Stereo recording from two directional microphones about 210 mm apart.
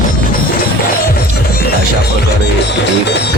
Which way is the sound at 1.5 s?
45° left (ahead or behind).